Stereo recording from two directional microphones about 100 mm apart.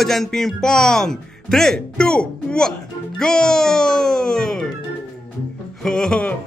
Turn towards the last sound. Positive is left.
turn(degrees=10)  # may be behind; listen again after turning